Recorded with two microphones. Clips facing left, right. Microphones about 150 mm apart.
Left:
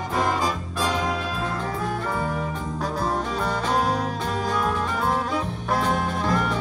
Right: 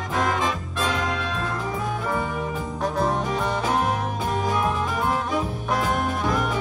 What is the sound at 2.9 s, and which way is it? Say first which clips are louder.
Music: right 3 dB; 20° right (ahead or behind).